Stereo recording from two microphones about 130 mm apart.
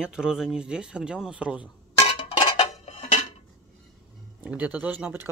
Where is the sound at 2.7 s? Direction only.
50° left (ahead or behind).